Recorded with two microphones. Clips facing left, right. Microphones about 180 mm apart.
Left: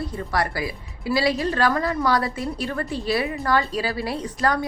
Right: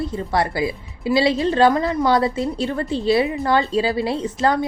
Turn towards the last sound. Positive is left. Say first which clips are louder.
# right 4 dB
turn(degrees=-25)  # may be behind; listen again after turning